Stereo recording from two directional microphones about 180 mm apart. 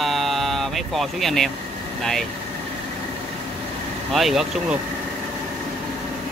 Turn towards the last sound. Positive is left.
turn(degrees=0)  # may be behind; listen again after turning